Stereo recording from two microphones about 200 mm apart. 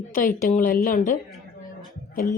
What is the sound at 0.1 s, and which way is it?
A woman's voice, 40° left (ahead or behind).